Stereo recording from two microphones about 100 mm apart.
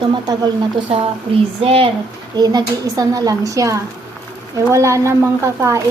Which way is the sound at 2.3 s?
40° right (ahead or behind).